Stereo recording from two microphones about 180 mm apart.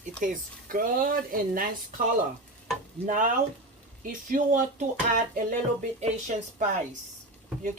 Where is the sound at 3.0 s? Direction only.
45° right (ahead or behind).